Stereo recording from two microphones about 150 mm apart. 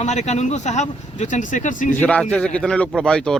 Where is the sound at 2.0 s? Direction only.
10° left (ahead or behind).